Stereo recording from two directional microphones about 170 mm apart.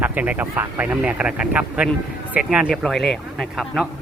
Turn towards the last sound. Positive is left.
turn(degrees=0)  # may be behind; listen again after turning